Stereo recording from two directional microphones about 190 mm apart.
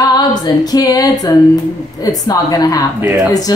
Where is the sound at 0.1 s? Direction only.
20° left (ahead or behind).